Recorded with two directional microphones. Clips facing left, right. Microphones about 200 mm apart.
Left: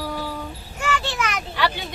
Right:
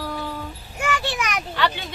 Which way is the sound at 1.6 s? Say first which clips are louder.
Even; 10° left (ahead or behind).